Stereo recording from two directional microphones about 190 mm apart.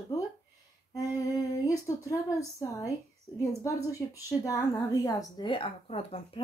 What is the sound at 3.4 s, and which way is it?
A woman's voice, 15° left (ahead or behind).